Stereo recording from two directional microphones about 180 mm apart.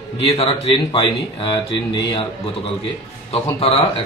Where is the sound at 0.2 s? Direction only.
35° left (ahead or behind).